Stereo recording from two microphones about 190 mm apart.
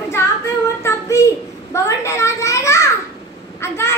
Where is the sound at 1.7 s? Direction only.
15° left (ahead or behind).